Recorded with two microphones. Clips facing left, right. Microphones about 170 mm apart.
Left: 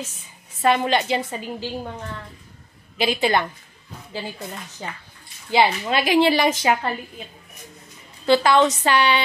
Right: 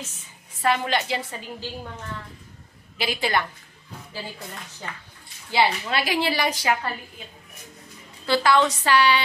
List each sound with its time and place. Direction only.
0.6 s a woman's voice: 20° left (ahead or behind)
3.0 s a woman's voice: 20° left (ahead or behind)
5.5 s a woman's voice: 20° left (ahead or behind)
8.3 s a woman's voice: 20° left (ahead or behind)